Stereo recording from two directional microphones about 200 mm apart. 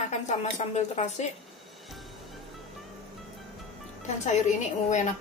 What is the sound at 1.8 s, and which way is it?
Music, centre (ahead or behind).